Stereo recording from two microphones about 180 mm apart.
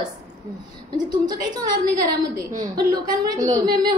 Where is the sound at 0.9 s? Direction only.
25° right (ahead or behind).